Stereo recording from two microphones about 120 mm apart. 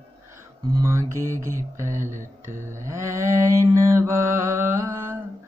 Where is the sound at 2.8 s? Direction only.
25° right (ahead or behind).